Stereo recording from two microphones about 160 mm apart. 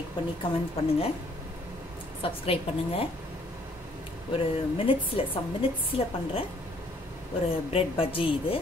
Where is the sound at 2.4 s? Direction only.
35° left (ahead or behind).